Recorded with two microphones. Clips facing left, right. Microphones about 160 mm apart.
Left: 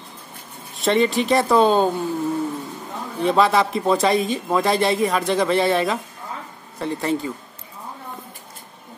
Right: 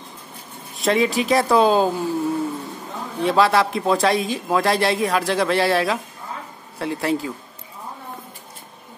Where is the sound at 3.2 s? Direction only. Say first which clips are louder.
Even; centre (ahead or behind).